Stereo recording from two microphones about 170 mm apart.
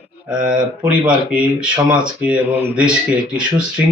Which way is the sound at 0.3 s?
5° right (ahead or behind).